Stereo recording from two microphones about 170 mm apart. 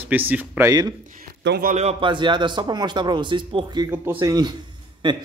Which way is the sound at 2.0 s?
30° right (ahead or behind).